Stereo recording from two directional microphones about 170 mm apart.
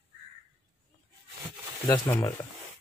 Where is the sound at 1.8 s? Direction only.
25° left (ahead or behind).